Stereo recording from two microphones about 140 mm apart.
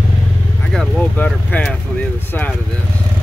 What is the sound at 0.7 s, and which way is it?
Speech, 5° left (ahead or behind).